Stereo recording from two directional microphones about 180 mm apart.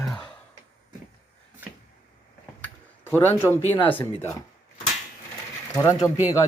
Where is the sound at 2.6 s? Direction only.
10° left (ahead or behind).